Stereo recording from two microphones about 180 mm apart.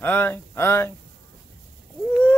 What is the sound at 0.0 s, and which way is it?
Speech, 10° left (ahead or behind).